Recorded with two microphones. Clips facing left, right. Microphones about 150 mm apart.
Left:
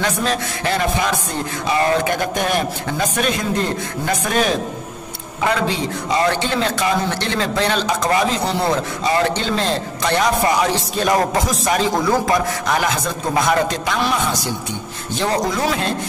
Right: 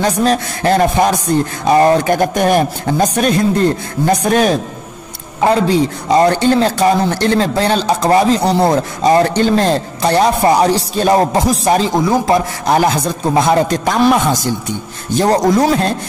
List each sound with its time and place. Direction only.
0.0 s a man's voice: 40° right (ahead or behind)
6.1 s a man's voice: 40° right (ahead or behind)
12.0 s a man's voice: 20° right (ahead or behind)
12.6 s a man's voice: 35° right (ahead or behind)
13.7 s a man's voice: 45° right (ahead or behind)